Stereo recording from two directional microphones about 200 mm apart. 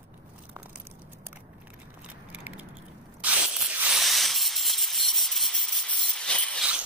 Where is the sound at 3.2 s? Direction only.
5° right (ahead or behind).